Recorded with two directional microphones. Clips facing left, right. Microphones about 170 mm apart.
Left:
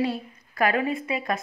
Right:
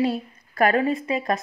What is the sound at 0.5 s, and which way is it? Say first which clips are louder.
Speech: right 4 dB; 40° right (ahead or behind).